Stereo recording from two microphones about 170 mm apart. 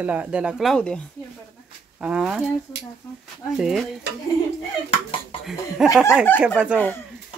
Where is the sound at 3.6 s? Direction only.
Centre (ahead or behind).